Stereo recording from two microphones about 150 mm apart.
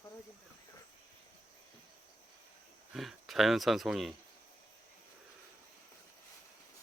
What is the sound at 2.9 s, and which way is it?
Speech, centre (ahead or behind).